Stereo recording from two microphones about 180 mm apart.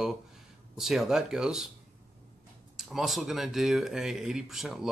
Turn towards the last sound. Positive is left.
turn(degrees=0)  # may be behind; listen again after turning